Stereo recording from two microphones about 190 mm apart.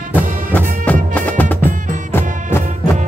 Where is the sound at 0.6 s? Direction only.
10° left (ahead or behind).